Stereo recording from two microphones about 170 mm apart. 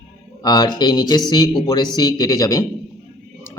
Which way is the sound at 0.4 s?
25° left (ahead or behind).